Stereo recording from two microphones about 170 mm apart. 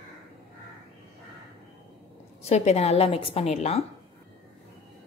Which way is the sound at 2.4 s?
40° left (ahead or behind).